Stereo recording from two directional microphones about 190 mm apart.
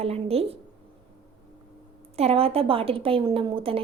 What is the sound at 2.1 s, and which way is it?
A woman's voice, 30° right (ahead or behind).